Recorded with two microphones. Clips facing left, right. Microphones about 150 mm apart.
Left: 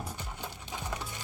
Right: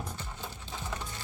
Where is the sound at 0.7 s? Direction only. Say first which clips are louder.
Left 1 dB; 15° left (ahead or behind).